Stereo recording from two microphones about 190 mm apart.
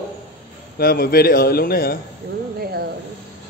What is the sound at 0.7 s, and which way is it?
A man's voice, 55° left (ahead or behind).